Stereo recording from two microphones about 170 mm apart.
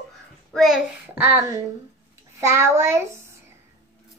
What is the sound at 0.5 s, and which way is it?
Speech, centre (ahead or behind).